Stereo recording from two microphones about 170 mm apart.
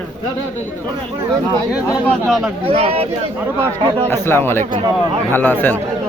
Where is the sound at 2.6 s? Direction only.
35° right (ahead or behind).